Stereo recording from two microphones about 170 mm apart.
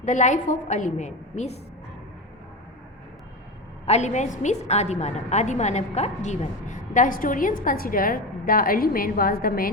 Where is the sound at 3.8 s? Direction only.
40° left (ahead or behind).